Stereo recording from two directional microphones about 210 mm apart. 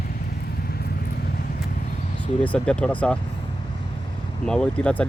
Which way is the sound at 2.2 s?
5° left (ahead or behind).